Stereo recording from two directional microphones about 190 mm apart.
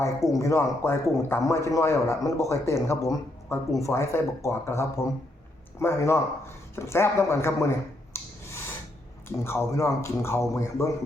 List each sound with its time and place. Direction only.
0.0 s speech: 15° left (ahead or behind)
6.7 s a sound: 15° left (ahead or behind)
9.4 s speech: 15° left (ahead or behind)